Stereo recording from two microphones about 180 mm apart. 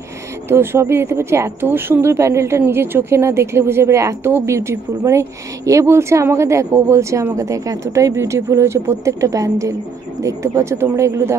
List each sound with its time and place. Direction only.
0.5 s speech: 15° right (ahead or behind)